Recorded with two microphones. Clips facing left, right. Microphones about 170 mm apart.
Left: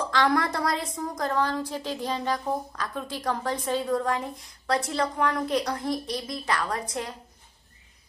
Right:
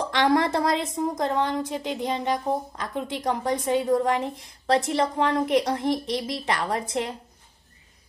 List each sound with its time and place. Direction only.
0.0 s a woman's voice: 20° right (ahead or behind)